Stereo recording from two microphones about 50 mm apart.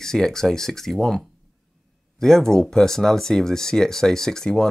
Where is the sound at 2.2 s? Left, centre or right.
Centre.